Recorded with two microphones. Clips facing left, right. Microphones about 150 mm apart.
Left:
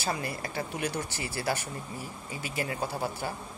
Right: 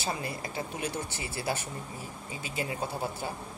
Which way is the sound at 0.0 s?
20° right (ahead or behind).